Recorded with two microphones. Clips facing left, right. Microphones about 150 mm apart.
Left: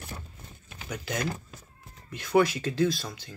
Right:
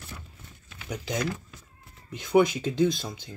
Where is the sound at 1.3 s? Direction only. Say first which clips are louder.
Right 1 dB; 45° left (ahead or behind).